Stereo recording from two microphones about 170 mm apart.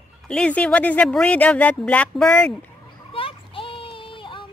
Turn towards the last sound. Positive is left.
turn(degrees=30)  # may be behind; listen again after turning